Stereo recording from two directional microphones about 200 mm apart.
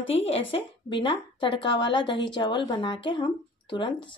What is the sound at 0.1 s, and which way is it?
A woman's voice, 30° left (ahead or behind).